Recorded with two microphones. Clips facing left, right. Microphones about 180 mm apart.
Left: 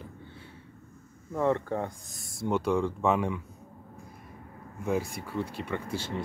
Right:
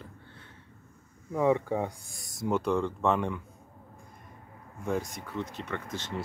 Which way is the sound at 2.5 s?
Centre (ahead or behind).